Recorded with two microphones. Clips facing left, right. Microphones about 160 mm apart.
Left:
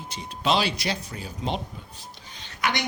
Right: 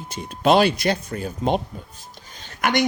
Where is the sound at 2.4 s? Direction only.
50° right (ahead or behind).